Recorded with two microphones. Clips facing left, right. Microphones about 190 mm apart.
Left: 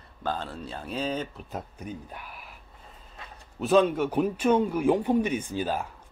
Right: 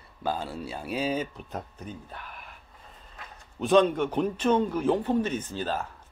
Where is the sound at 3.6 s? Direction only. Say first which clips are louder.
Even; 5° left (ahead or behind).